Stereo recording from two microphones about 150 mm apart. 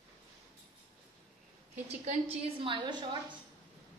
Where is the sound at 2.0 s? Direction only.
45° right (ahead or behind); by 3.0 s 30° right (ahead or behind).